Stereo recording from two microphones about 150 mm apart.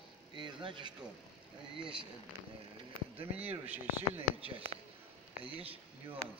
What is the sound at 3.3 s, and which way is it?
Speech, 10° right (ahead or behind).